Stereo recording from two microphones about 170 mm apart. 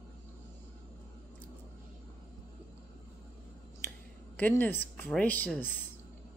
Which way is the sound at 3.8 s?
15° left (ahead or behind).